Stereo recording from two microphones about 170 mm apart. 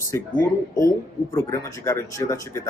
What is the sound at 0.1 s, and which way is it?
Speech, 20° left (ahead or behind).